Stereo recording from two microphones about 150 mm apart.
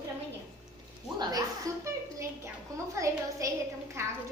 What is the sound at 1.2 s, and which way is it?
A woman's voice, 25° right (ahead or behind).